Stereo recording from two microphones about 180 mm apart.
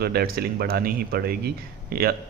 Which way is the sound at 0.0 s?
60° right (ahead or behind).